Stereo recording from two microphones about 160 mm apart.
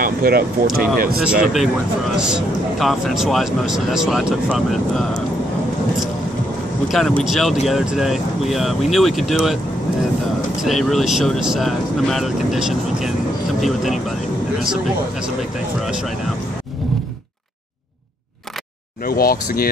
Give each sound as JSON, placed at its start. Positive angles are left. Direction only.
{"t": 0.0, "sound": "speech", "side_deg": -70}
{"t": 1.5, "sound": "speech", "side_deg": 0}
{"t": 6.9, "sound": "speech", "side_deg": 5}
{"t": 10.6, "sound": "speech", "side_deg": 0}
{"t": 19.0, "sound": "speech", "side_deg": 70}